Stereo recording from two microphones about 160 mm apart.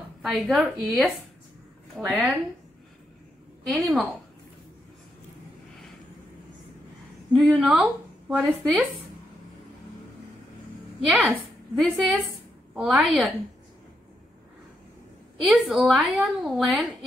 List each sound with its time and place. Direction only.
0.2 s a woman's voice: centre (ahead or behind)
2.0 s a woman's voice: 10° right (ahead or behind)
3.6 s a woman's voice: centre (ahead or behind)
7.4 s a woman's voice: 5° right (ahead or behind)
11.1 s a woman's voice: centre (ahead or behind)
15.4 s a woman's voice: centre (ahead or behind)